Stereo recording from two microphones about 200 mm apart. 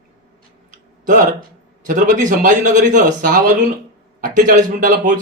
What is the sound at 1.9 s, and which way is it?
A man's voice, 40° right (ahead or behind).